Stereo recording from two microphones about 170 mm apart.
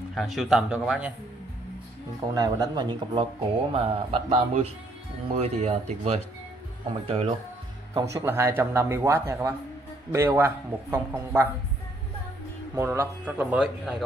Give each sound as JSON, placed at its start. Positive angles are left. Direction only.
{"t": 0.1, "sound": "speech", "side_deg": 0}
{"t": 2.3, "sound": "a man's voice", "side_deg": -25}
{"t": 7.9, "sound": "speech", "side_deg": -20}
{"t": 12.7, "sound": "speech", "side_deg": -15}